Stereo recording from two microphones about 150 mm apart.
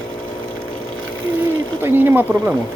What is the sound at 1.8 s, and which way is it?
Speech, 15° right (ahead or behind).